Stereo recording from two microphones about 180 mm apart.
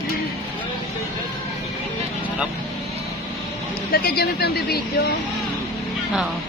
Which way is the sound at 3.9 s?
60° left (ahead or behind).